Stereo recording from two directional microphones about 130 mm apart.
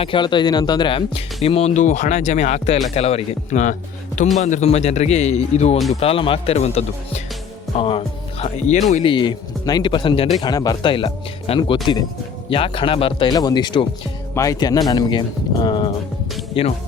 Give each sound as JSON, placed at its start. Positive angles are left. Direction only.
{"t": 0.0, "sound": "speech", "side_deg": 40}
{"t": 2.9, "sound": "speech", "side_deg": 50}
{"t": 9.0, "sound": "speech", "side_deg": 35}
{"t": 15.6, "sound": "music", "side_deg": 35}